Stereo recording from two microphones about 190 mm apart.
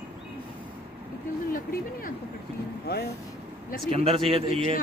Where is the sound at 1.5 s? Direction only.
45° left (ahead or behind).